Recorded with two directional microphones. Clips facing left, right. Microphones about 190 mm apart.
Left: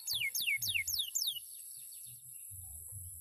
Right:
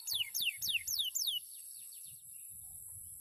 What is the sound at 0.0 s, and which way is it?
Music, 15° left (ahead or behind).